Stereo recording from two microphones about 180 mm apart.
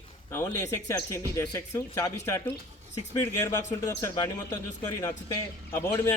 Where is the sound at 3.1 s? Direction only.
15° left (ahead or behind).